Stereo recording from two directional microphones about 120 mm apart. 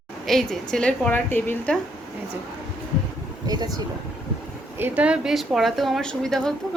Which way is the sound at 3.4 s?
35° right (ahead or behind).